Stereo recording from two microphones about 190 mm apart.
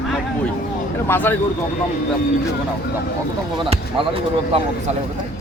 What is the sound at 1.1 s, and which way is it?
Speech, 10° left (ahead or behind).